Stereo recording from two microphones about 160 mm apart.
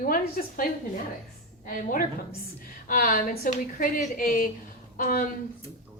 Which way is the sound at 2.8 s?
60° left (ahead or behind).